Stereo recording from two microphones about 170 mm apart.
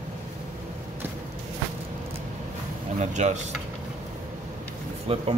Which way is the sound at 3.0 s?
45° right (ahead or behind).